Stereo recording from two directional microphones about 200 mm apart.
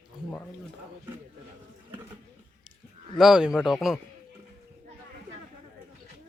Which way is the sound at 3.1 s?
5° right (ahead or behind).